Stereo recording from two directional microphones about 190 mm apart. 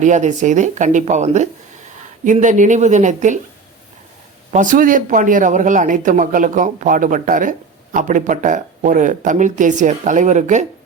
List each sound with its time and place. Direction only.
0.0 s speech: 40° right (ahead or behind)
4.5 s speech: 45° right (ahead or behind)